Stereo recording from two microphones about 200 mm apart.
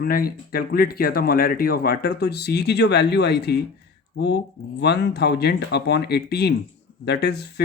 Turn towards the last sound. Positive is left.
turn(degrees=55)  # may be behind; listen again after turning